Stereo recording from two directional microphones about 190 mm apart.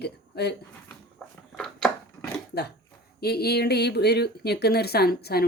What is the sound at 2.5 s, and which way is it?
Speech, 60° left (ahead or behind).